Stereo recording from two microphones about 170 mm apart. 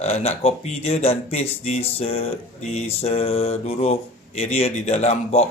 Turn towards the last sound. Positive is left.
turn(degrees=40)  # may be behind; listen again after turning